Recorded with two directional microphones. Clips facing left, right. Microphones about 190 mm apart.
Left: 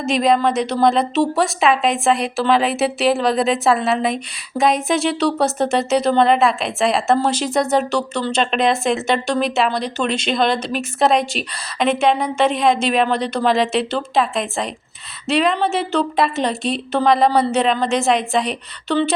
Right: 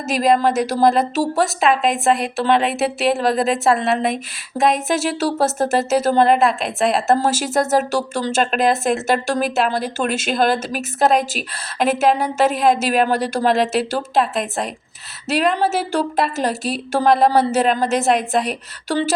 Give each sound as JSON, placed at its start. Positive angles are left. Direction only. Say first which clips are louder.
{"t": 0.1, "sound": "a woman's voice", "louder": "even", "side_deg": 0}